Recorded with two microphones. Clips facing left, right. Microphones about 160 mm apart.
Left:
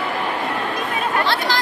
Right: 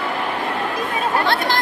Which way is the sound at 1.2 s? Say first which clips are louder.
Right 1 dB; 55° right (ahead or behind).